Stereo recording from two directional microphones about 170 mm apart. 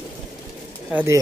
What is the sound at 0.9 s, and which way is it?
Speech, 15° right (ahead or behind).